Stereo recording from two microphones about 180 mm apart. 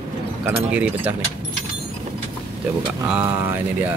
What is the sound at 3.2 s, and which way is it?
Speech, 15° right (ahead or behind).